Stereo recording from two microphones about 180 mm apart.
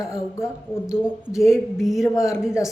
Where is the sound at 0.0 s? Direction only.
15° left (ahead or behind).